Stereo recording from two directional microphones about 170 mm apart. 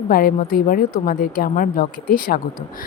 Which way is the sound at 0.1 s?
60° left (ahead or behind).